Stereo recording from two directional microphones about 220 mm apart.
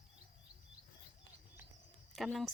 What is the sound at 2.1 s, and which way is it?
Speech, centre (ahead or behind).